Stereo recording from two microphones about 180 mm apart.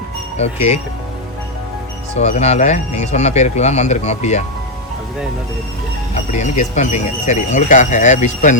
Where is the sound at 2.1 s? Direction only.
40° left (ahead or behind).